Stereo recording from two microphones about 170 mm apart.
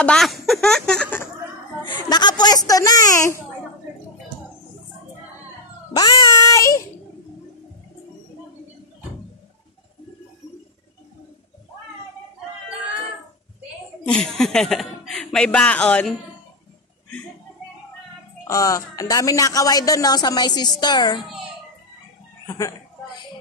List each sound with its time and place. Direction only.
0.0 s a sound: 5° left (ahead or behind)
1.9 s a sound: 25° left (ahead or behind)
5.9 s child singing: 20° left (ahead or behind)
14.0 s chuckle: 5° left (ahead or behind)
18.5 s speech: 20° left (ahead or behind)
22.5 s speech: 20° left (ahead or behind)